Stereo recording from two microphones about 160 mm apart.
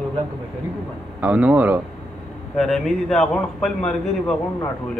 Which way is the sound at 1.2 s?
10° right (ahead or behind).